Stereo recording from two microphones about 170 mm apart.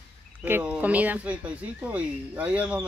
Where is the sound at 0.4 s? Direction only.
10° right (ahead or behind).